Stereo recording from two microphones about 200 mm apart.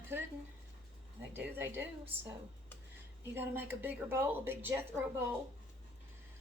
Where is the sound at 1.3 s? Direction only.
10° right (ahead or behind).